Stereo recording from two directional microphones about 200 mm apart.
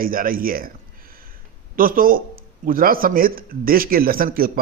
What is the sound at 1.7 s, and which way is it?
A man's voice, 45° right (ahead or behind).